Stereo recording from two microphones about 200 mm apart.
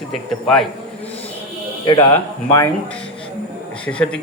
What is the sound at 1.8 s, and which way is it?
Speech, 20° left (ahead or behind).